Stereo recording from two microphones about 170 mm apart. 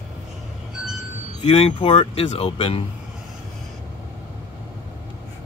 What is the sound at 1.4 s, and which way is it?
Speech, 35° left (ahead or behind).